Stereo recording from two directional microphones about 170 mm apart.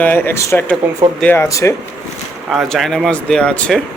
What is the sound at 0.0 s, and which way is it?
Speech, 10° left (ahead or behind).